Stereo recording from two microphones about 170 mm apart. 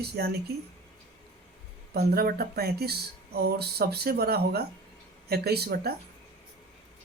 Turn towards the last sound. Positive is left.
turn(degrees=-70)  # may be behind; listen again after turning